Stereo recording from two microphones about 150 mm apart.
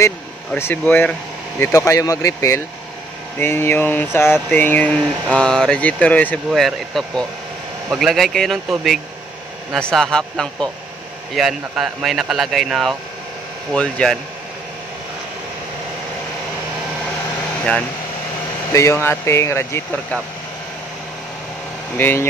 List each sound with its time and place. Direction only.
0.6 s speech: 15° left (ahead or behind)
18.7 s speech: 15° left (ahead or behind)
21.9 s speech: 15° left (ahead or behind)